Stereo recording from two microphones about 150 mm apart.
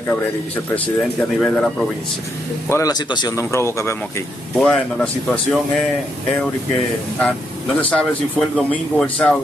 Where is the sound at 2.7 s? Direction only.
25° left (ahead or behind).